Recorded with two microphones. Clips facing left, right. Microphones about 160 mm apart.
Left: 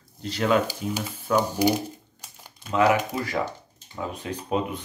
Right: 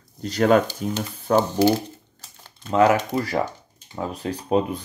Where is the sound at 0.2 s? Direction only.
45° right (ahead or behind).